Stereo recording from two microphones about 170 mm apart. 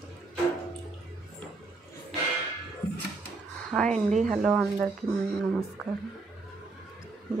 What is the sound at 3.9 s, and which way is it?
Speech, 45° right (ahead or behind).